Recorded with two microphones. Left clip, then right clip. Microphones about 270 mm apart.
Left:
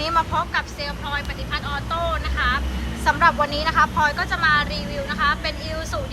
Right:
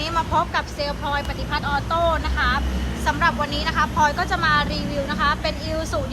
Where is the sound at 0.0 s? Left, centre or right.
Centre.